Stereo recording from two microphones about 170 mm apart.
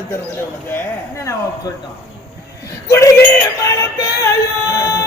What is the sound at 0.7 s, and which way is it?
Speech, 15° left (ahead or behind).